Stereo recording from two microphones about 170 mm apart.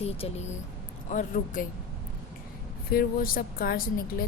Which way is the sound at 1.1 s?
50° left (ahead or behind).